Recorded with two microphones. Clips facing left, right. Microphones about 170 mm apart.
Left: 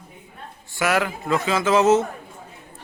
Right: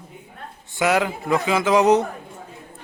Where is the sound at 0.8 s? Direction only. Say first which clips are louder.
Right 2 dB; 20° right (ahead or behind).